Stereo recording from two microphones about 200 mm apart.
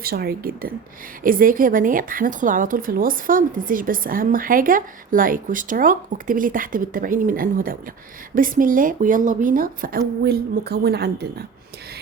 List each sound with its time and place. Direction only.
0.0 s a woman's voice: 50° right (ahead or behind)